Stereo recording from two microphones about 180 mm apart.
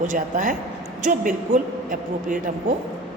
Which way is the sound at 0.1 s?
45° right (ahead or behind).